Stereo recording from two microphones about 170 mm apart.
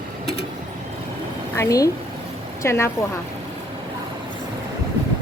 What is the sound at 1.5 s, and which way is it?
A woman's voice, 20° left (ahead or behind).